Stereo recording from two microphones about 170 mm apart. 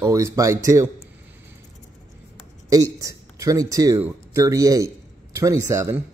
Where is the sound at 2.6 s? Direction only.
20° right (ahead or behind).